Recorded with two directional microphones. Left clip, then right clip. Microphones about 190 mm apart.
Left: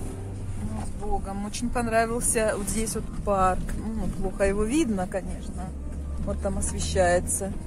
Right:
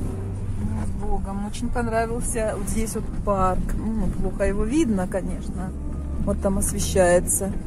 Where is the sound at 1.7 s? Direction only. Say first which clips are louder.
Even; 10° left (ahead or behind).